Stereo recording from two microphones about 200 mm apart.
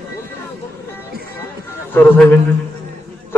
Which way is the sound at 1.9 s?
10° left (ahead or behind).